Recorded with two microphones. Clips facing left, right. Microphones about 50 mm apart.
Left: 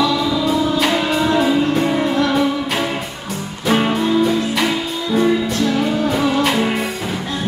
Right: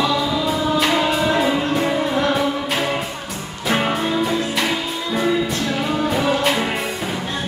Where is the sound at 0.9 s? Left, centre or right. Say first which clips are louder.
Left 1 dB; centre.